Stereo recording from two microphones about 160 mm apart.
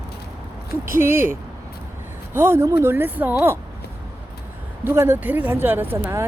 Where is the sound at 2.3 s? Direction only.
15° right (ahead or behind).